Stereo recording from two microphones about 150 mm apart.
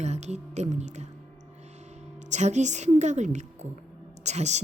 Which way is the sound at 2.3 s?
50° right (ahead or behind).